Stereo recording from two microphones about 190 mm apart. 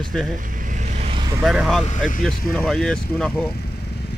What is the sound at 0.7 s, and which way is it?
Vehicle, 40° right (ahead or behind).